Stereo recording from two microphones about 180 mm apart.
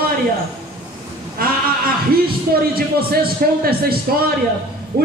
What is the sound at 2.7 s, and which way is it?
Speech, 55° right (ahead or behind).